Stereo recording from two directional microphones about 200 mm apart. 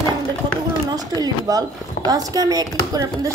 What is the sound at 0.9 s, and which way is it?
A woman's voice, 20° right (ahead or behind).